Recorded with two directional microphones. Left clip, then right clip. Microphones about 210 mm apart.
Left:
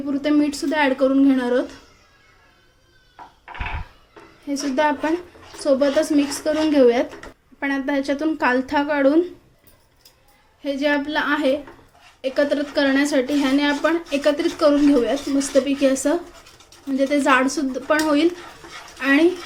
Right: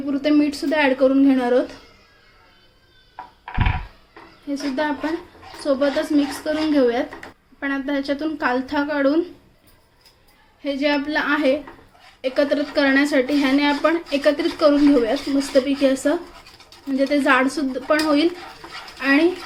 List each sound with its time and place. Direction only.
0.1 s a woman's voice: 5° left (ahead or behind)
5.6 s a woman's voice: 25° left (ahead or behind)
10.6 s a woman's voice: 5° left (ahead or behind)